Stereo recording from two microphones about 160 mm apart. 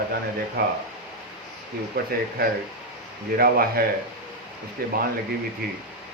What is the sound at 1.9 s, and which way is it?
A man's voice, 70° right (ahead or behind).